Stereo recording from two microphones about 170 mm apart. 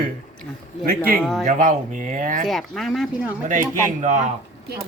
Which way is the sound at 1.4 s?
50° right (ahead or behind).